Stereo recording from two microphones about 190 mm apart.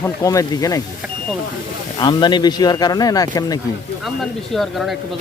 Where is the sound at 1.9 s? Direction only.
25° left (ahead or behind).